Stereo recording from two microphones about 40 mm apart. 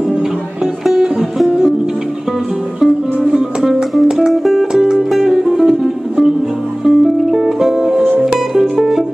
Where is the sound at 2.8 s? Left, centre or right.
Centre.